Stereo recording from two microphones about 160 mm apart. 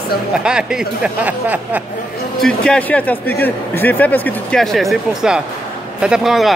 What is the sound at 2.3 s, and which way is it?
A man's voice, 5° left (ahead or behind).